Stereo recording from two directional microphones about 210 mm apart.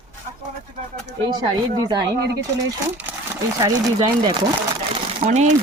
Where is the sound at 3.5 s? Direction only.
20° right (ahead or behind).